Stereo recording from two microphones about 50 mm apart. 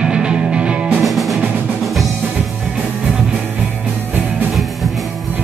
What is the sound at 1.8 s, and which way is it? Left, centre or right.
Drum, centre.